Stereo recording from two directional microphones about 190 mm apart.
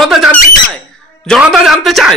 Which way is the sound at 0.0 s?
Centre (ahead or behind).